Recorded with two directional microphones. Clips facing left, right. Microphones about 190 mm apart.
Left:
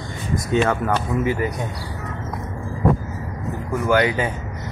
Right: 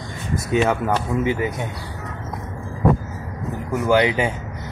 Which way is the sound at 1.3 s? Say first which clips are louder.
Even; 20° right (ahead or behind).